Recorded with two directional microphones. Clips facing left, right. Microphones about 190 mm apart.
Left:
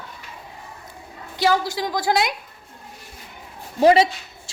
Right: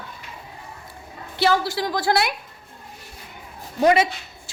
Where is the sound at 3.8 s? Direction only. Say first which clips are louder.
Left 3 dB; 30° left (ahead or behind).